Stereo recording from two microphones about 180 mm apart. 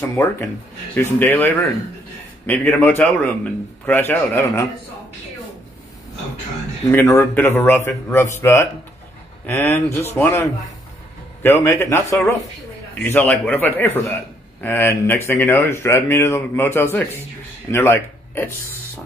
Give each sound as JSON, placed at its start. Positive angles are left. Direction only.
{"t": 0.0, "sound": "speech", "side_deg": 15}
{"t": 6.9, "sound": "speech", "side_deg": 15}